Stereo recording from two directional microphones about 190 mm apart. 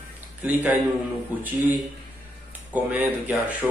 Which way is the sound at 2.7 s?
10° right (ahead or behind).